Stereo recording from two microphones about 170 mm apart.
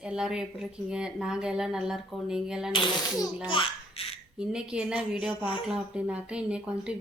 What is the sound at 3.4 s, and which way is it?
Laughter, 30° left (ahead or behind).